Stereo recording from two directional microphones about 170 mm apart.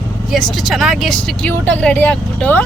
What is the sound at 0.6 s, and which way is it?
Speech, centre (ahead or behind).